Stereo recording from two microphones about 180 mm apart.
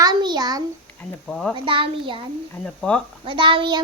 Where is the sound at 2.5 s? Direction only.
5° left (ahead or behind).